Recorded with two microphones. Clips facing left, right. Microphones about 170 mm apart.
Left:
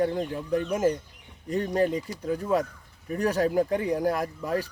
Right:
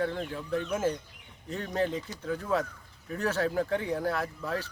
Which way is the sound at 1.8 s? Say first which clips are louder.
Left 2 dB; 10° left (ahead or behind).